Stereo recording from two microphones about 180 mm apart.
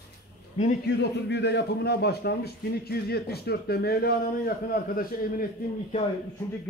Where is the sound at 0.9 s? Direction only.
70° left (ahead or behind).